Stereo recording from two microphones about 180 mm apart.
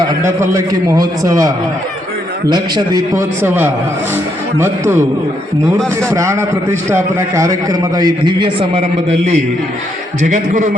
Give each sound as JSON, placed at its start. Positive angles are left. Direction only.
{"t": 0.2, "sound": "a man's voice", "side_deg": -15}
{"t": 6.1, "sound": "a man's voice", "side_deg": -15}